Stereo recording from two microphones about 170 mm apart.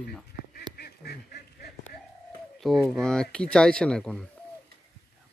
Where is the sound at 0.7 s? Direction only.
70° left (ahead or behind).